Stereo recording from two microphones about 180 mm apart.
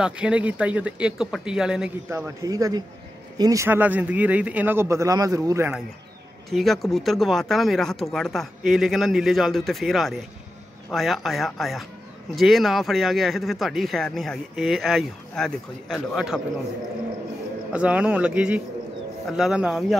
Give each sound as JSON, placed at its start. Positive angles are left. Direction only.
{"t": 0.0, "sound": "speech", "side_deg": -5}
{"t": 2.0, "sound": "speech", "side_deg": -15}
{"t": 6.5, "sound": "speech", "side_deg": 0}
{"t": 17.7, "sound": "speech", "side_deg": -5}